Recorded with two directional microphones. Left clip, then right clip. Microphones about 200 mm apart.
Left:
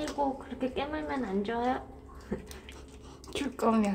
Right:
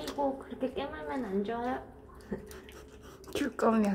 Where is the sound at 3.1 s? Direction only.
5° right (ahead or behind).